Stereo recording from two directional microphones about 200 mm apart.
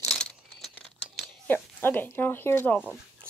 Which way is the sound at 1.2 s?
5° left (ahead or behind).